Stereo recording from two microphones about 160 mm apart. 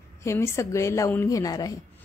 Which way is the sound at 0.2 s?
15° left (ahead or behind).